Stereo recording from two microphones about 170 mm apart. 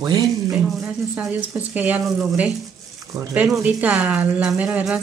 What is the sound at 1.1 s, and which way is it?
Speech, 10° right (ahead or behind).